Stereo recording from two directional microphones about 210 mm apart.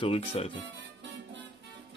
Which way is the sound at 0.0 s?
30° left (ahead or behind).